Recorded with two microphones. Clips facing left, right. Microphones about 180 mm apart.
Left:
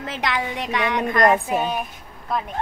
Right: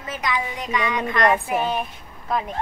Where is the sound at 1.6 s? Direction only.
5° left (ahead or behind).